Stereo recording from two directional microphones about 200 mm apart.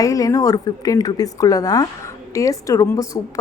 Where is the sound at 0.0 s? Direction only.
15° left (ahead or behind).